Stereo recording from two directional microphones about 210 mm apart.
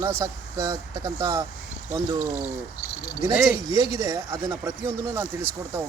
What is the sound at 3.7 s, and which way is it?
Speech, 15° right (ahead or behind).